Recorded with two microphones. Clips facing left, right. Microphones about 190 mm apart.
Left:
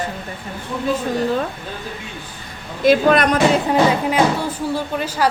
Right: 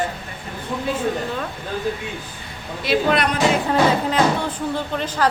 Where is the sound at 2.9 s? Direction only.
45° left (ahead or behind).